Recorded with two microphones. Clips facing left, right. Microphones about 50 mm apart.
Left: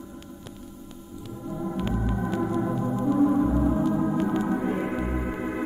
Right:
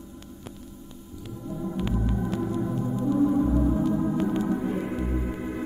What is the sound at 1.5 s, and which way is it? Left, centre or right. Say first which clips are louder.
Organ: left 1 dB; centre.